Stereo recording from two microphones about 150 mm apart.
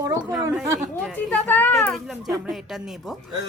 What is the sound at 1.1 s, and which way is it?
Speech, 10° left (ahead or behind).